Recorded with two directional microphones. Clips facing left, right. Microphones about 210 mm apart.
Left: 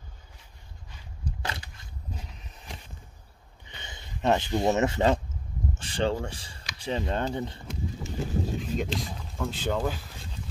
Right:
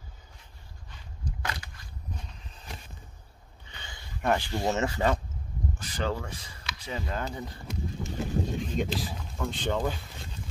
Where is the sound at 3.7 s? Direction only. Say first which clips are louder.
Left 2 dB; 20° left (ahead or behind).